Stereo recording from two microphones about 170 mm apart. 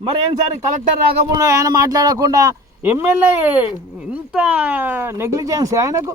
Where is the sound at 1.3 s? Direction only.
20° right (ahead or behind).